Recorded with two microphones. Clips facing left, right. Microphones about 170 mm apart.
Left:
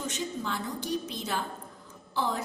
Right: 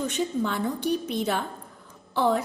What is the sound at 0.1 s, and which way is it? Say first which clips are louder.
A woman's voice: right 7 dB; 60° right (ahead or behind).